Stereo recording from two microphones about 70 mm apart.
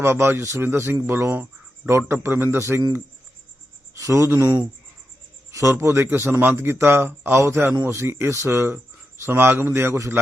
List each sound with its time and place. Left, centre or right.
0.0 s a man's voice: right
3.9 s a sound: right
5.5 s a man's voice: right